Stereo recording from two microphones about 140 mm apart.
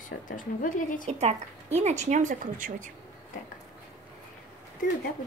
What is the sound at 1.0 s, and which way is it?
Speech, 50° right (ahead or behind).